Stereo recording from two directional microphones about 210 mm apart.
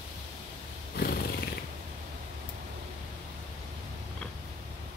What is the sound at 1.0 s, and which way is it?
Horse, 45° left (ahead or behind).